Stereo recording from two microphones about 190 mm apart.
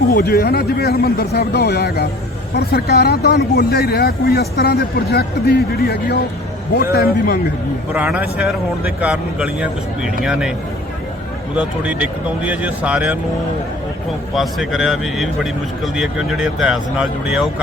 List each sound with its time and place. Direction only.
0.1 s a man's voice: 55° left (ahead or behind)
7.9 s speech: 5° right (ahead or behind)
11.5 s speech: 5° right (ahead or behind)
14.3 s speech: centre (ahead or behind)